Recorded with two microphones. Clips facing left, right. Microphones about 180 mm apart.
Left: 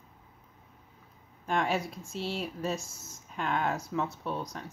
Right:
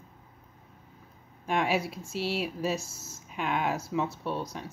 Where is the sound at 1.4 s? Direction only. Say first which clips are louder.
Right 2 dB; 5° right (ahead or behind).